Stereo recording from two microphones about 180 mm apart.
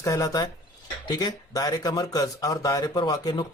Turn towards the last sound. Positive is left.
turn(degrees=25)  # may be behind; listen again after turning